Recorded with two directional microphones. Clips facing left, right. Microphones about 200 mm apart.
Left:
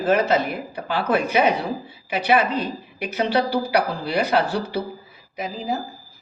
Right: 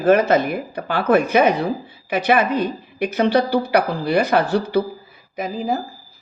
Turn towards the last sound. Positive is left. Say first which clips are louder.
# right 4 dB
turn(degrees=-50)  # may be behind; listen again after turning